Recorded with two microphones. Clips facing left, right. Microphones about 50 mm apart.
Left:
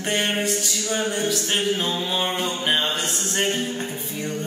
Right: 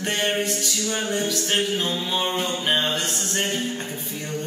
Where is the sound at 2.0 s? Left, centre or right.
Centre.